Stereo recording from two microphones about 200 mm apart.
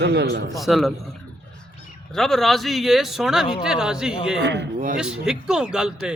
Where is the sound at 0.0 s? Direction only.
55° right (ahead or behind).